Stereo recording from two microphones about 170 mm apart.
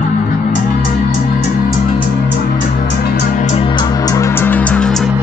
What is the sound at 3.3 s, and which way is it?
Music, 45° left (ahead or behind).